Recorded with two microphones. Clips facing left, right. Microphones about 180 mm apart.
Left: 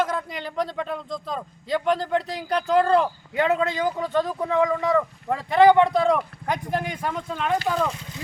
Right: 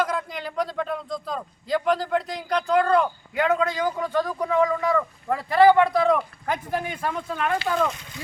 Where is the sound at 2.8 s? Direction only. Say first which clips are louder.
Left 1 dB; 30° left (ahead or behind).